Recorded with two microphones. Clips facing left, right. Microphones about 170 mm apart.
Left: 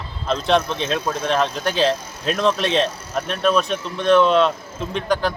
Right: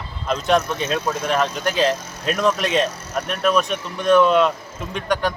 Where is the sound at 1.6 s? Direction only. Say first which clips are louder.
Even; 30° left (ahead or behind).